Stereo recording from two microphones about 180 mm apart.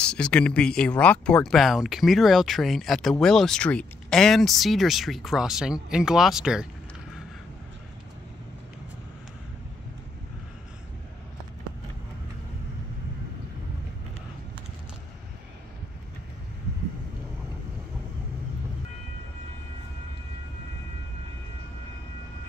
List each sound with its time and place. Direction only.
0.0 s speech: 5° left (ahead or behind)